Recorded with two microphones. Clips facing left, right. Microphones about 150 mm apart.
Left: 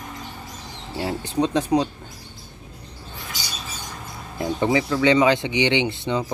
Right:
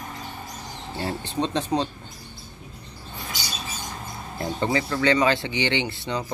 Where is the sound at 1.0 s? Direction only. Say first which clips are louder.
Left 4 dB; 10° left (ahead or behind).